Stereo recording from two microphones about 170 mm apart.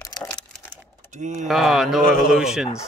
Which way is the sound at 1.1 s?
45° right (ahead or behind).